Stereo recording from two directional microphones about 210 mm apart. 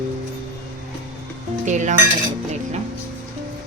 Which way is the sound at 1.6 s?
35° right (ahead or behind).